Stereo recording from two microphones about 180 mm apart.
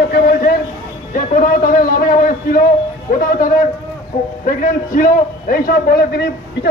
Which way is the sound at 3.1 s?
50° left (ahead or behind).